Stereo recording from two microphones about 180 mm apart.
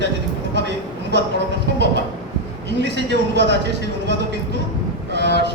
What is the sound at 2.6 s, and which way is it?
Speech, 75° right (ahead or behind).